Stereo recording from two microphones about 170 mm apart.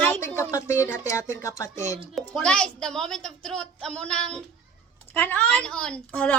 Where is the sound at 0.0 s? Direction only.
10° left (ahead or behind).